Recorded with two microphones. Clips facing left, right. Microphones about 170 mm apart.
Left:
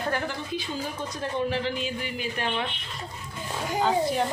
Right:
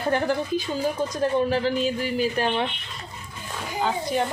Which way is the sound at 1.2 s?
40° right (ahead or behind).